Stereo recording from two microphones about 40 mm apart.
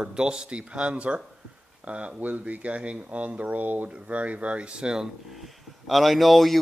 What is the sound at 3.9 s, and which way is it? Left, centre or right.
Speech, right.